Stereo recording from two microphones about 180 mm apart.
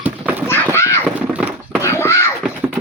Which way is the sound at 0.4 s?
10° left (ahead or behind).